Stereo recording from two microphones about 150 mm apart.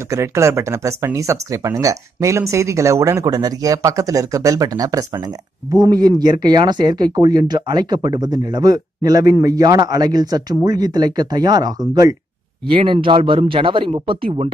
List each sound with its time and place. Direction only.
0.1 s speech: 20° right (ahead or behind)
12.6 s speech: 35° right (ahead or behind)